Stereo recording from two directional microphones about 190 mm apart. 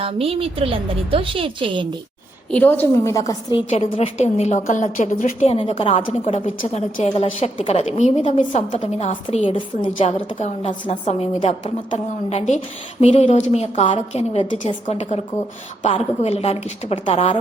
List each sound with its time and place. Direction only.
0.0 s a woman's voice: 30° right (ahead or behind)
2.5 s a woman's voice: 10° left (ahead or behind)
3.7 s a woman's voice: 30° left (ahead or behind)
5.5 s a woman's voice: 30° left (ahead or behind)
6.6 s a woman's voice: 40° left (ahead or behind)
16.2 s a woman's voice: 35° left (ahead or behind)